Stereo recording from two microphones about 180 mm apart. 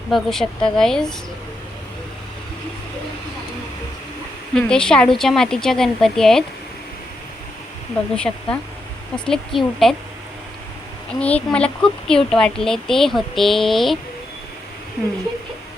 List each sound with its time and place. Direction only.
0.1 s speech: centre (ahead or behind)
4.5 s speech: 5° left (ahead or behind)
8.1 s speech: 5° left (ahead or behind)
11.2 s speech: 5° left (ahead or behind)